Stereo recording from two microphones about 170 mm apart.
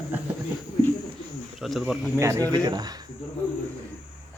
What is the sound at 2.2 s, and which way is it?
Speech, 20° right (ahead or behind).